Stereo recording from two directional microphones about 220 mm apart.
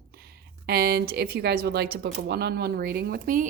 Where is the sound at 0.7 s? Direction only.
45° right (ahead or behind).